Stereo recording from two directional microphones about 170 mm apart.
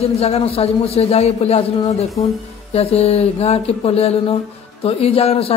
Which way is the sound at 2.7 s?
35° left (ahead or behind).